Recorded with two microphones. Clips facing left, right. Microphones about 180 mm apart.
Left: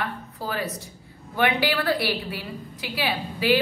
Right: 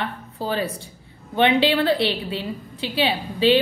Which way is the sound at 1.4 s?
25° right (ahead or behind).